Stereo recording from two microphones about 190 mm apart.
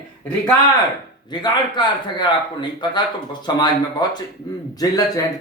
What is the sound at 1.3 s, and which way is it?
Speech, 20° left (ahead or behind).